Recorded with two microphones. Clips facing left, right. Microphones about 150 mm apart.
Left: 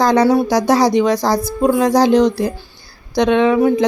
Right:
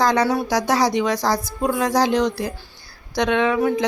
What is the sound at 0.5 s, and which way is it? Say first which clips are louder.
A woman's voice: left 6 dB; 25° left (ahead or behind).